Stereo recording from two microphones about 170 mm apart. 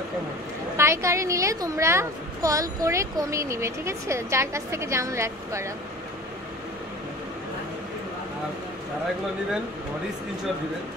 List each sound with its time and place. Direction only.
0.7 s a woman's voice: 15° right (ahead or behind)